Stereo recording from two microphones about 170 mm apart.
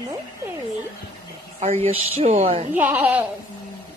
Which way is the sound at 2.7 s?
10° right (ahead or behind).